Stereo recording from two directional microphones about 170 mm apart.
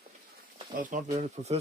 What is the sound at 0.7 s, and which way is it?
Speech, 50° right (ahead or behind).